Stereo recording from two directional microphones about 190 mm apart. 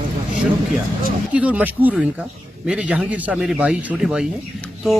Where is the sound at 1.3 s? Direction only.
5° right (ahead or behind).